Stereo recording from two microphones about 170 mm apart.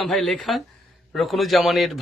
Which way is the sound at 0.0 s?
Centre (ahead or behind).